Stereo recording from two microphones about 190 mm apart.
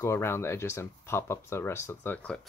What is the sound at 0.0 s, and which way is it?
Speech, 15° left (ahead or behind).